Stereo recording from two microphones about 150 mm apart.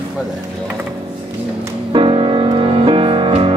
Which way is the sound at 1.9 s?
35° right (ahead or behind).